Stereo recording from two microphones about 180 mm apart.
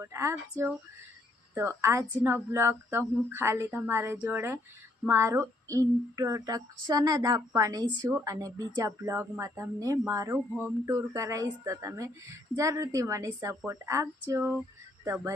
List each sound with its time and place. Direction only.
0.0 s speech: 15° right (ahead or behind)